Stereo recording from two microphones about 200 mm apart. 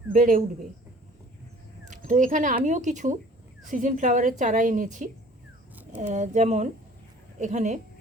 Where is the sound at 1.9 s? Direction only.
40° right (ahead or behind).